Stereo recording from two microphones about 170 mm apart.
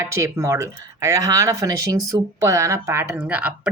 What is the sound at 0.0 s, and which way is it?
Speech, 15° right (ahead or behind).